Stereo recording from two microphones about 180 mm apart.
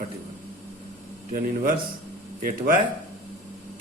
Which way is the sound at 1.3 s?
50° right (ahead or behind).